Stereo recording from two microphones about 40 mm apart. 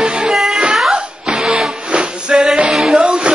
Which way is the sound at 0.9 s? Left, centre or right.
Right.